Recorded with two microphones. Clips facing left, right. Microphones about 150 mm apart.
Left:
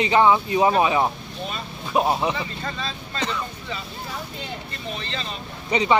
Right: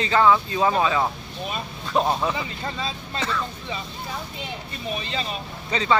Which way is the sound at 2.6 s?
15° right (ahead or behind).